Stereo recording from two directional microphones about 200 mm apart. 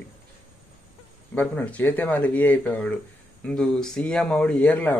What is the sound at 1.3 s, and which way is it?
Speech, 10° left (ahead or behind).